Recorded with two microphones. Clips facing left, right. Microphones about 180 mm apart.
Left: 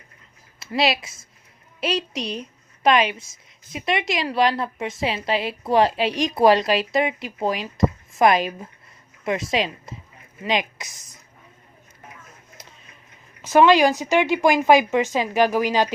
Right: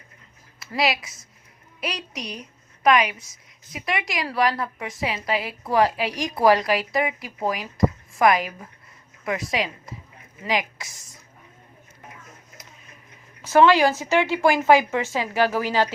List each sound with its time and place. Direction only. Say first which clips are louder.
0.6 s a woman's voice: left 2 dB; 25° left (ahead or behind)
13.4 s speech: left 1 dB; 15° left (ahead or behind)